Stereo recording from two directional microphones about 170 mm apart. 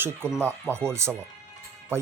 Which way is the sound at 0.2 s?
15° right (ahead or behind).